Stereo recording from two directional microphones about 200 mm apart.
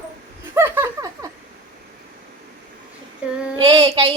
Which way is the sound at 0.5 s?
10° right (ahead or behind).